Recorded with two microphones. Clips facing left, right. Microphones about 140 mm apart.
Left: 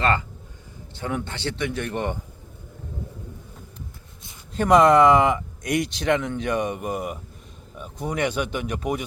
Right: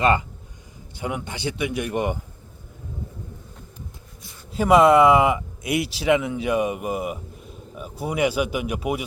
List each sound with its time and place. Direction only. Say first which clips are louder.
0.0 s speech: right 3 dB; 15° right (ahead or behind)
4.5 s speech: right 1 dB; 5° right (ahead or behind)